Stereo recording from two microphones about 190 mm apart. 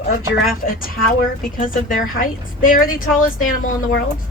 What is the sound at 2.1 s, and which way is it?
A woman's voice, 45° left (ahead or behind).